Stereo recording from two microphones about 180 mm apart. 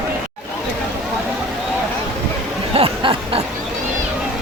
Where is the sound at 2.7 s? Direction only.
30° right (ahead or behind).